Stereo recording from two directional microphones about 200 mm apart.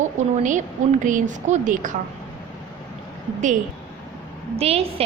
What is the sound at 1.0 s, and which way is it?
Speech, 40° right (ahead or behind).